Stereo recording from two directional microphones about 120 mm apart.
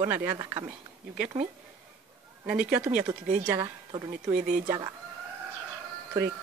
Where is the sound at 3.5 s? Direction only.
30° right (ahead or behind).